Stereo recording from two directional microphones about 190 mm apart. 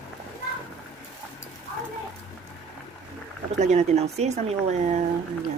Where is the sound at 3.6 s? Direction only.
40° right (ahead or behind).